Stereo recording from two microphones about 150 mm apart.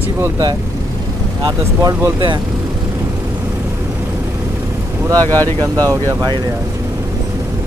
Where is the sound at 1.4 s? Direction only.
25° right (ahead or behind).